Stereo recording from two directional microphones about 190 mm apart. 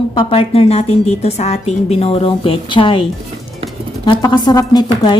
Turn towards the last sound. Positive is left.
turn(degrees=20)  # may be behind; listen again after turning